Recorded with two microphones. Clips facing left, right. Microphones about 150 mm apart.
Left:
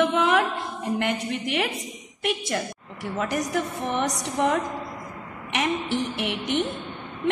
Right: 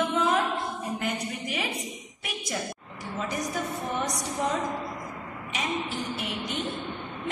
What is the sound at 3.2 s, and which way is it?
A woman's voice, 75° left (ahead or behind).